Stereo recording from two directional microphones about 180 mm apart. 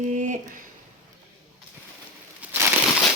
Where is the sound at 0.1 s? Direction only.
40° right (ahead or behind).